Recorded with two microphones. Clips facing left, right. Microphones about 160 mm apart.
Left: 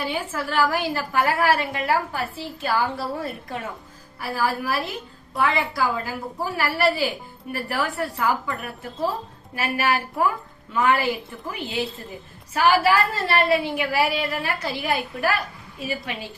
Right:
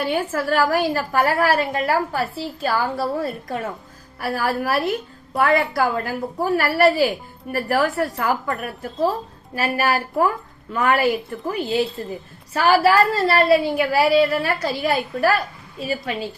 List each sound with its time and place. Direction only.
0.0 s a woman's voice: 45° right (ahead or behind)
4.2 s a woman's voice: 55° right (ahead or behind)